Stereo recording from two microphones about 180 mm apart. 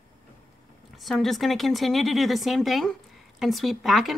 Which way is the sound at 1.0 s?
Centre (ahead or behind).